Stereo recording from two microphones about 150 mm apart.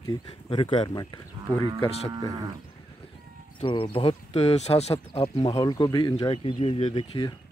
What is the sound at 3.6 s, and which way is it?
Speech, 35° left (ahead or behind).